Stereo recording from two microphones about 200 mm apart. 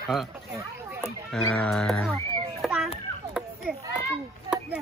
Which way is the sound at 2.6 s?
Centre (ahead or behind).